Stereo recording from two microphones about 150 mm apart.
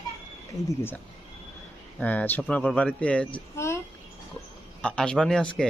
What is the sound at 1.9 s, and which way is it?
Speech, 10° left (ahead or behind).